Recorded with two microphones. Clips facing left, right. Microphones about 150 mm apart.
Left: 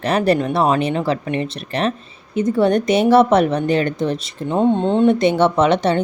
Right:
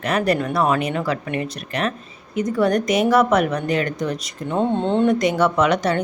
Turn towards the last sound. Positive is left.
turn(degrees=25)  # may be behind; listen again after turning